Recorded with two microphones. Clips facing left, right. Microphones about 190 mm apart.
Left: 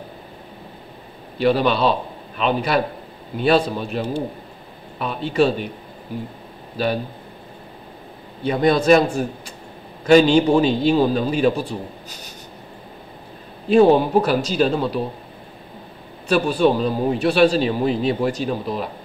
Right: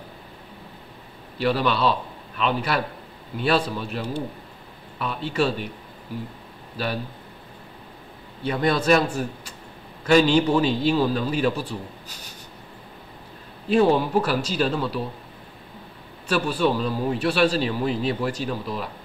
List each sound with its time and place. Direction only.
1.4 s a man's voice: 20° left (ahead or behind)
8.5 s a man's voice: 20° left (ahead or behind)
13.8 s a man's voice: 20° left (ahead or behind)
16.3 s a man's voice: 20° left (ahead or behind)